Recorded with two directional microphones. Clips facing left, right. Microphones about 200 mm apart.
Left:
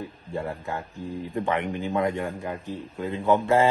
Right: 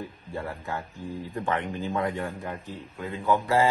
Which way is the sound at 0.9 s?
15° left (ahead or behind).